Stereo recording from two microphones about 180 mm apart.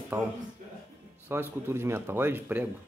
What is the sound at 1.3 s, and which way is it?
Speech, 15° right (ahead or behind).